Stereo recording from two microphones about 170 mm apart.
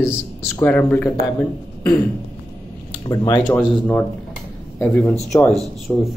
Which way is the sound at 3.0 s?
25° left (ahead or behind).